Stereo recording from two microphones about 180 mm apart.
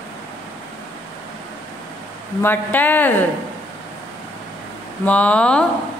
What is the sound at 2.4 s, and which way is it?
Speech, 10° left (ahead or behind).